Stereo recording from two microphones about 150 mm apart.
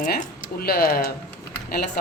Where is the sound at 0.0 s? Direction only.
60° left (ahead or behind); by 1.1 s 85° left.